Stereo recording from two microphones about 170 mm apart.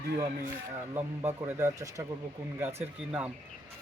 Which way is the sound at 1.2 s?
15° right (ahead or behind).